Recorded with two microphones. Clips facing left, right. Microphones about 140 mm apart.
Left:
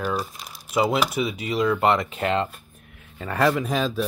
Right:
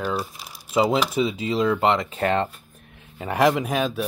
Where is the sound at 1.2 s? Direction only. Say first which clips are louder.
Right 1 dB; 25° right (ahead or behind).